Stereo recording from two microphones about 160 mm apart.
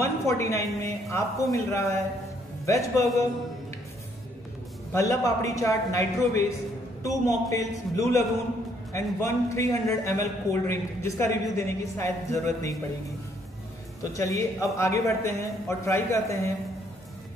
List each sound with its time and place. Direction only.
0.0 s a man's voice: 20° left (ahead or behind)
4.9 s a man's voice: 20° left (ahead or behind)
14.1 s a man's voice: 20° left (ahead or behind)